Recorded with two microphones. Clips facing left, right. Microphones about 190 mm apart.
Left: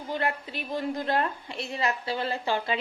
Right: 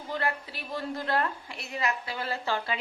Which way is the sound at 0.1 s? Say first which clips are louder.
Left 2 dB; 20° left (ahead or behind).